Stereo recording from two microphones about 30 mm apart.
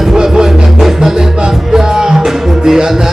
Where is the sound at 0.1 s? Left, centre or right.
Centre.